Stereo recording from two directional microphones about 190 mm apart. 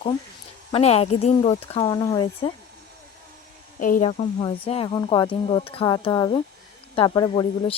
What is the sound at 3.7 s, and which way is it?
Speech, 45° left (ahead or behind).